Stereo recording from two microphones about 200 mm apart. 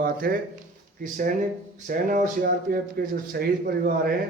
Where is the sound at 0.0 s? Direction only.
50° right (ahead or behind).